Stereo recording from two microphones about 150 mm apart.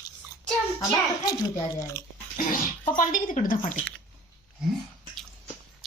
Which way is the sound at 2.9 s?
65° left (ahead or behind).